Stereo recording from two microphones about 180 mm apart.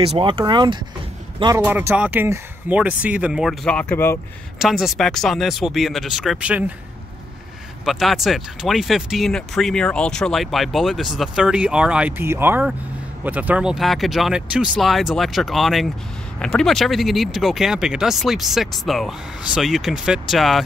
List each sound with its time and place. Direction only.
0.0 s speech: 30° right (ahead or behind)
1.6 s speech: 10° right (ahead or behind); by 4.2 s 10° left (ahead or behind)
4.6 s speech: centre (ahead or behind)
7.8 s speech: centre (ahead or behind)